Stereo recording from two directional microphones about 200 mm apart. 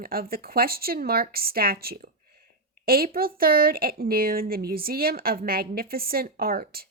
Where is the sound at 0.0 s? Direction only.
45° right (ahead or behind).